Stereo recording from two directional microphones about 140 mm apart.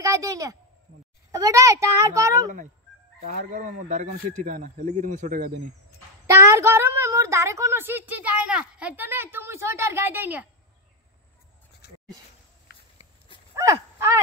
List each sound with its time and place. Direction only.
0.0 s a sound: 25° right (ahead or behind)
1.3 s a child's voice: 20° right (ahead or behind)
3.2 s speech: 60° right (ahead or behind)
6.2 s a woman's voice: 20° right (ahead or behind)
13.6 s speech: 20° right (ahead or behind)